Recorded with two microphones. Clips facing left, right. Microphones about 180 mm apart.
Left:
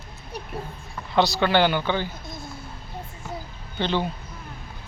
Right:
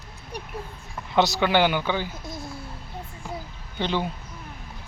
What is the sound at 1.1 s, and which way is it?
Speech, 15° right (ahead or behind).